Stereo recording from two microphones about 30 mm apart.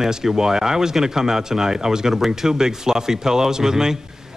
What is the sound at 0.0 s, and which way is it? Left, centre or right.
A man's voice, centre.